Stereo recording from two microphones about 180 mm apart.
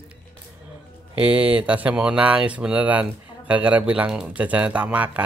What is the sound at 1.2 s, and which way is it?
Speech, 5° right (ahead or behind).